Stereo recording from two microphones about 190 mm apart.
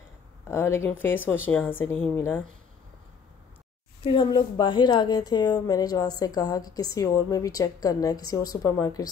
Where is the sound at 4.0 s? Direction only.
25° left (ahead or behind).